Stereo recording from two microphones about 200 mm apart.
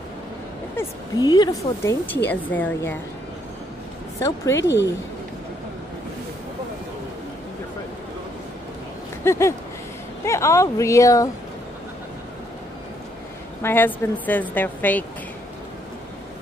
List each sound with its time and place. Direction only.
0.7 s a woman's voice: 20° left (ahead or behind)
4.6 s speech: 60° left (ahead or behind)
9.2 s a woman's voice: 15° left (ahead or behind)
13.6 s a woman's voice: 10° left (ahead or behind)